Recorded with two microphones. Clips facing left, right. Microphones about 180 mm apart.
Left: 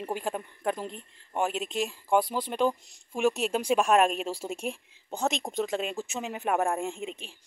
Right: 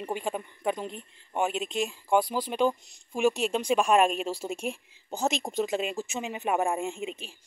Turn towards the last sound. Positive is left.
turn(degrees=0)  # may be behind; listen again after turning